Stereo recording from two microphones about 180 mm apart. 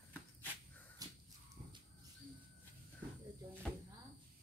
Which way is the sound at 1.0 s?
20° right (ahead or behind).